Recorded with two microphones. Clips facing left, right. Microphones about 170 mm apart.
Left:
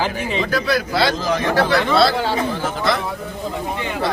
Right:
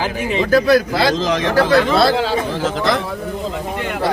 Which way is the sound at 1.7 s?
45° right (ahead or behind).